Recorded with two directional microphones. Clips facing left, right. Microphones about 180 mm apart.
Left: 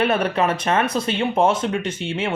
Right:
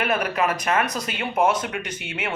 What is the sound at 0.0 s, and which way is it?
Speech, 30° left (ahead or behind).